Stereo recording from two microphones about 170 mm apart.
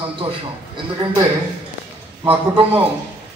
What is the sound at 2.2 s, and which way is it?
Speech, 10° right (ahead or behind).